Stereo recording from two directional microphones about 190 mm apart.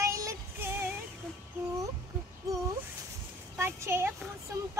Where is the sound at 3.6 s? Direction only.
15° right (ahead or behind).